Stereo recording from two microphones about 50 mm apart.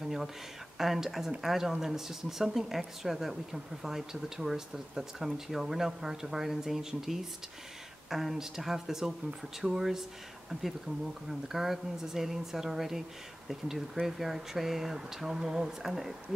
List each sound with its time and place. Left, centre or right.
0.0 s a sound: centre
0.7 s speech: centre
10.5 s speech: centre
11.2 s speech: centre